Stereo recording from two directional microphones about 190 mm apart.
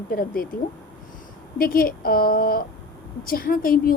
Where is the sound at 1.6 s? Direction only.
50° left (ahead or behind).